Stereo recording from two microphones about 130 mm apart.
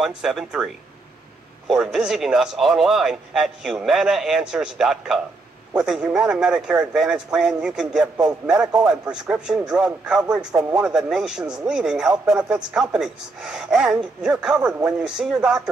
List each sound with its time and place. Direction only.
0.0 s speech: 5° right (ahead or behind)
1.7 s speech: 5° right (ahead or behind)